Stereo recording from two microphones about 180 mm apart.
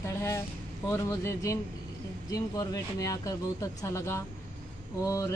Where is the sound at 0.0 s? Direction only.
15° left (ahead or behind).